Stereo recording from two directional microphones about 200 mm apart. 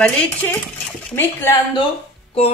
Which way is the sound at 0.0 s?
10° left (ahead or behind).